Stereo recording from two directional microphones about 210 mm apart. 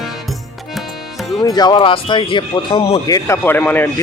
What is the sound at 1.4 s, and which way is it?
Speech, 20° left (ahead or behind).